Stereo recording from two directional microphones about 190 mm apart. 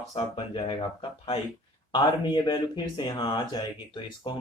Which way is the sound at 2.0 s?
25° left (ahead or behind).